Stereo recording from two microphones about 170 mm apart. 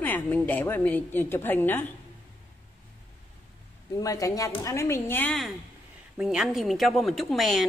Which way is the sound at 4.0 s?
20° left (ahead or behind).